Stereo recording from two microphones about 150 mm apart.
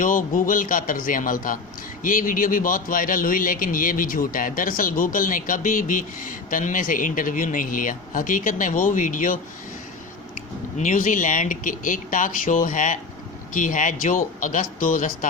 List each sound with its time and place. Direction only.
0.0 s a man's voice: 65° left (ahead or behind)
10.8 s a man's voice: 55° left (ahead or behind)